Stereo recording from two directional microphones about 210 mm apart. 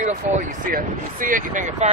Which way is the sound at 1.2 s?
40° right (ahead or behind).